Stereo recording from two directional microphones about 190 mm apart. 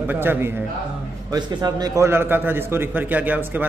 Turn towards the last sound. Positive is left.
turn(degrees=-10)  # may be behind; listen again after turning